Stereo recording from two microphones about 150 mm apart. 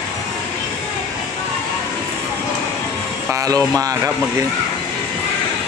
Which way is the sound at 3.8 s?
25° right (ahead or behind).